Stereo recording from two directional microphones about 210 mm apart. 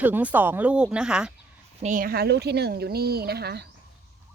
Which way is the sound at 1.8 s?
40° right (ahead or behind).